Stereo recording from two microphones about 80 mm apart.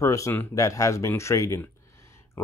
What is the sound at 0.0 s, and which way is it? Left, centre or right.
Speech, left.